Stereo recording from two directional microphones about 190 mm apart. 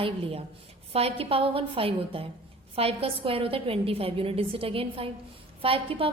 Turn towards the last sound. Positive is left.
turn(degrees=-30)  # may be behind; listen again after turning